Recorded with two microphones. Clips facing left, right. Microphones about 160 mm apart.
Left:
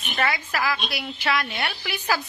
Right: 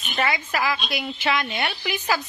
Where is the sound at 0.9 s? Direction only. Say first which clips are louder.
Right 1 dB; centre (ahead or behind).